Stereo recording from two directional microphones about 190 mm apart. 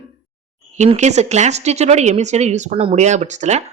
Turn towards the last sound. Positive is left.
turn(degrees=-35)  # may be behind; listen again after turning